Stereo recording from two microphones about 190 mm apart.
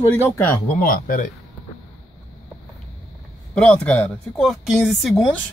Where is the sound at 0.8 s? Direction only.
50° left (ahead or behind).